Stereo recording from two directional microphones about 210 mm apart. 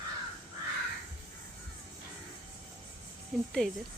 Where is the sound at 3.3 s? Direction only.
Centre (ahead or behind).